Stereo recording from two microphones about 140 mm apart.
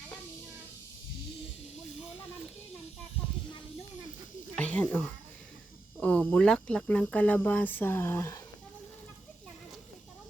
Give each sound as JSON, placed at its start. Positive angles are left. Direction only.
{"t": 4.5, "sound": "snake", "side_deg": 10}
{"t": 6.0, "sound": "speech", "side_deg": 10}